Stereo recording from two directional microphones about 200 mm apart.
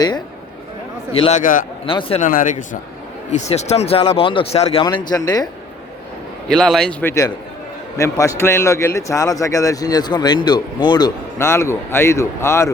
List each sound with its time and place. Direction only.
1.2 s a man's voice: 35° left (ahead or behind)
1.9 s speech: 25° left (ahead or behind)
2.2 s speech: 40° left (ahead or behind); by 5.5 s 20° left (ahead or behind)
6.5 s a man's voice: centre (ahead or behind)